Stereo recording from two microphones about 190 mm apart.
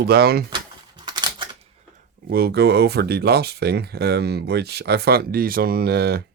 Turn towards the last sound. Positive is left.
turn(degrees=-55)  # may be behind; listen again after turning